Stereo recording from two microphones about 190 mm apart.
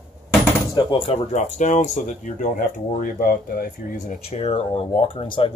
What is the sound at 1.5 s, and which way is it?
Speech, 40° left (ahead or behind).